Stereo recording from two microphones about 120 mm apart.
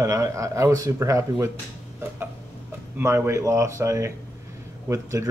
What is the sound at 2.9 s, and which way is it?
Speech, 20° right (ahead or behind).